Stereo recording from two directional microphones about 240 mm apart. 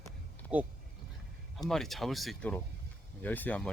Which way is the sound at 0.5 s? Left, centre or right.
Centre.